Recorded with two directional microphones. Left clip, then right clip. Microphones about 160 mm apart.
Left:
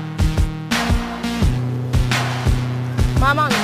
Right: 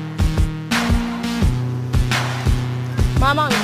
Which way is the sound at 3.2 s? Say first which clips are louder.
Even; 25° right (ahead or behind).